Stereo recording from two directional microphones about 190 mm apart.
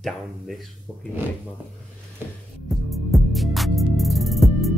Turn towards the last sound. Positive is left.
turn(degrees=0)  # may be behind; listen again after turning